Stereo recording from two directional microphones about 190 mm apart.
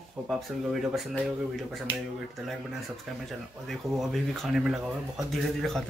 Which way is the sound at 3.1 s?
Centre (ahead or behind).